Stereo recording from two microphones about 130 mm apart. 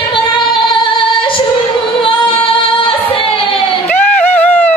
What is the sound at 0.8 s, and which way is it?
Female singing, 40° left (ahead or behind).